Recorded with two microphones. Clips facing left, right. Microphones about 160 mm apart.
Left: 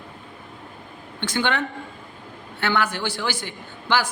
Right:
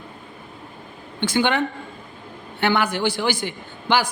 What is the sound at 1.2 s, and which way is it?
A man's voice, 10° right (ahead or behind).